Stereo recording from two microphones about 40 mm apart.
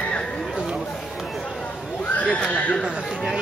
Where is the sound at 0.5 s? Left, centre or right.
Centre.